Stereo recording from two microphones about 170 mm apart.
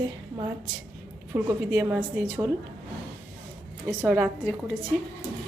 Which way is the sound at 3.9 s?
10° right (ahead or behind).